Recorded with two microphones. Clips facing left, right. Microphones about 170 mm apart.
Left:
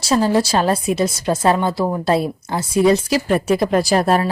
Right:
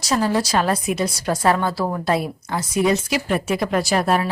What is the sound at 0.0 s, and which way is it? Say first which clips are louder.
A woman's voice: left 4 dB; 30° left (ahead or behind).